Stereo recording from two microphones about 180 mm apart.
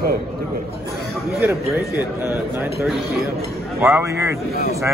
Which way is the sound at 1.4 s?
10° right (ahead or behind).